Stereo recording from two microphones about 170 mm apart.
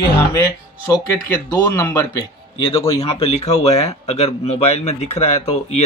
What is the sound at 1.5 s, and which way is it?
Speech, 20° left (ahead or behind).